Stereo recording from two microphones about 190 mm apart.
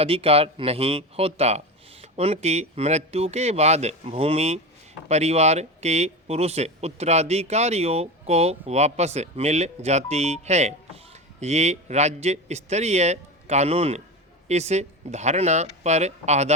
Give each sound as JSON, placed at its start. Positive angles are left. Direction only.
{"t": 0.0, "sound": "speech", "side_deg": -30}